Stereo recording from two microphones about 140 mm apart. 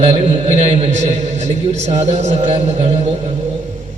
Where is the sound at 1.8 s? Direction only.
55° right (ahead or behind).